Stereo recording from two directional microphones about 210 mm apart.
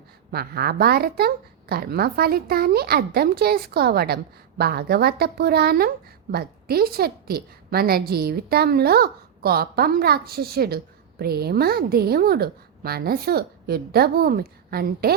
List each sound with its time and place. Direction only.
0.3 s a woman's voice: 45° right (ahead or behind)